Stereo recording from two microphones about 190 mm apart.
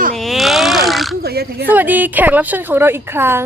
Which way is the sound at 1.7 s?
10° right (ahead or behind).